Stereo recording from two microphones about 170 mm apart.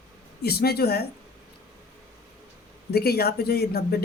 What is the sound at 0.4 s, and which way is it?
Speech, 65° left (ahead or behind).